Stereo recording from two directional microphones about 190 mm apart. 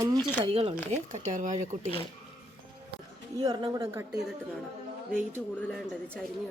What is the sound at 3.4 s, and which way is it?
Speech, 20° right (ahead or behind).